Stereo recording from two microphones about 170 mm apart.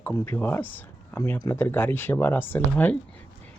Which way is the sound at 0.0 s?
10° left (ahead or behind).